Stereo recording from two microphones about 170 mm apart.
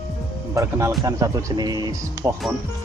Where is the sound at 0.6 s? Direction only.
15° right (ahead or behind).